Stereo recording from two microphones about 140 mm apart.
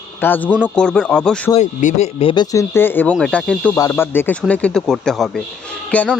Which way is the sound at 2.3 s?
30° left (ahead or behind).